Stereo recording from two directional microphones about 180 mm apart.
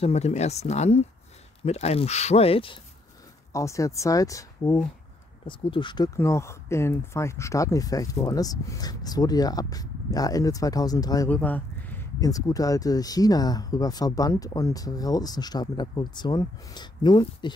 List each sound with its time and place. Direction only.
0.0 s speech: 35° left (ahead or behind)
3.5 s speech: 15° left (ahead or behind)
11.2 s speech: 10° left (ahead or behind); by 17.5 s 25° left (ahead or behind)